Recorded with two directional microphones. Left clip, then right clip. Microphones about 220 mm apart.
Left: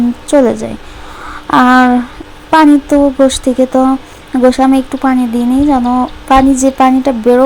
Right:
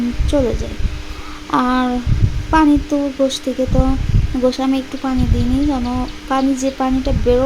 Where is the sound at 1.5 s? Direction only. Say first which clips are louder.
Left 10 dB; 25° left (ahead or behind).